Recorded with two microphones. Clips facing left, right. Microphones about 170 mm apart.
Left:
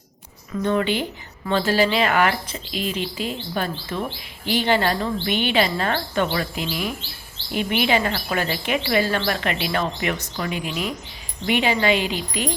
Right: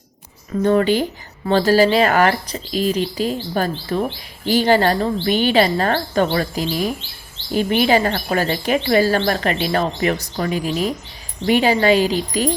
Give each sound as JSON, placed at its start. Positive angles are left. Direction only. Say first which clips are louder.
{"t": 0.5, "sound": "speech", "louder": "right 6 dB", "side_deg": -40}